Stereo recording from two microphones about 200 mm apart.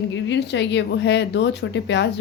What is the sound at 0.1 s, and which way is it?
Speech, 60° left (ahead or behind).